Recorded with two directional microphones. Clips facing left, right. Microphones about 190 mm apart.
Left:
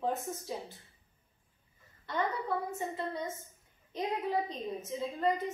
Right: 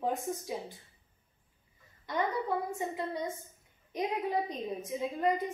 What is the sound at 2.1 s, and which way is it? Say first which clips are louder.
A woman's voice: right 2 dB; 15° right (ahead or behind).